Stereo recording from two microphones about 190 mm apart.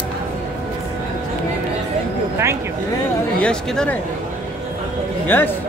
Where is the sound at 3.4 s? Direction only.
5° left (ahead or behind).